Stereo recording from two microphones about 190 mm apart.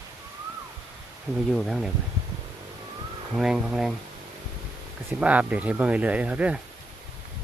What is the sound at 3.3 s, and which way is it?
Speech, centre (ahead or behind).